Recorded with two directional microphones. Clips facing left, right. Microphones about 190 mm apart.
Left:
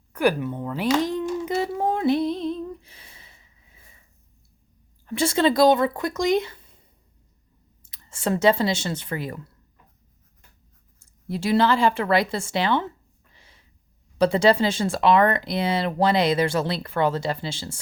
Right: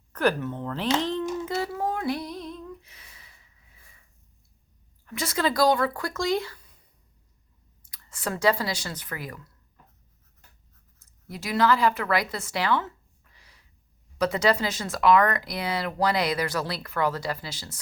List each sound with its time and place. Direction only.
0.1 s a sound: 10° left (ahead or behind)
5.0 s speech: 30° left (ahead or behind)
11.0 s speech: 30° left (ahead or behind)
13.3 s snort: 25° left (ahead or behind)
14.2 s speech: 30° left (ahead or behind)